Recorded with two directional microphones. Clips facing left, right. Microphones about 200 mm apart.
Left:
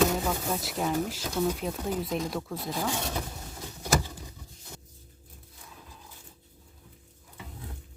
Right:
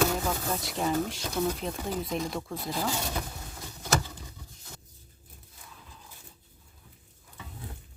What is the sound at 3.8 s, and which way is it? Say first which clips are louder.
Vehicle: left 1 dB; 10° left (ahead or behind).